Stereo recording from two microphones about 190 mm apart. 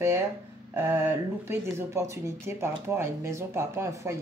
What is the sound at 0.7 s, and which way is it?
Speech, 10° right (ahead or behind).